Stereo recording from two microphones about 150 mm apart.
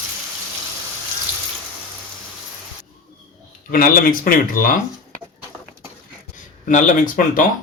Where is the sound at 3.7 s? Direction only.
75° left (ahead or behind).